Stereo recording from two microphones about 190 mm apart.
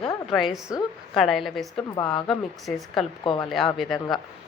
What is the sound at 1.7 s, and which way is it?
Speech, 20° left (ahead or behind).